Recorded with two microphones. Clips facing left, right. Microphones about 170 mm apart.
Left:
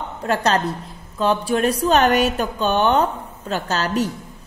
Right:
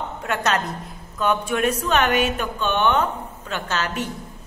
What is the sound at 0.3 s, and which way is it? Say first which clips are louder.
Speech: left 4 dB; 35° left (ahead or behind).